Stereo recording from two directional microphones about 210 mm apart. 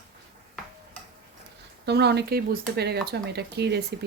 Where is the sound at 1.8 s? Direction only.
50° right (ahead or behind).